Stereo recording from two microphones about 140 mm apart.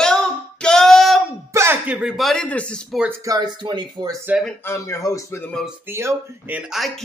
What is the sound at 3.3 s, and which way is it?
Speech, 30° right (ahead or behind).